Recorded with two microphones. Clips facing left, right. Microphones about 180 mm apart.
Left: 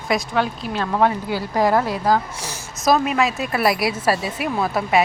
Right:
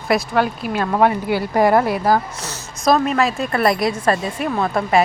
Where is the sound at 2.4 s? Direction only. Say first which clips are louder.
Right 1 dB; 10° left (ahead or behind).